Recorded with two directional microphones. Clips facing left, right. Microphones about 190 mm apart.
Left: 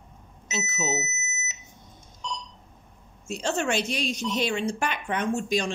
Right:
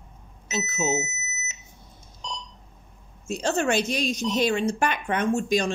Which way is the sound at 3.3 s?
40° right (ahead or behind).